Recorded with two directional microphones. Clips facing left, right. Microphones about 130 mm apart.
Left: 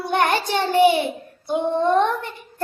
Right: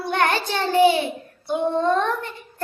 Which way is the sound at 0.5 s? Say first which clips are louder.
Left 1 dB; 15° left (ahead or behind).